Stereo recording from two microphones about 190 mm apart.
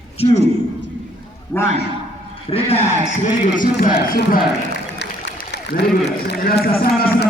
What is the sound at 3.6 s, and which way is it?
Speech, 45° left (ahead or behind).